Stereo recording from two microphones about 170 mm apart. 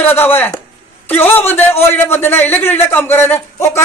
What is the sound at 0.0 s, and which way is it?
A man's voice, 10° left (ahead or behind).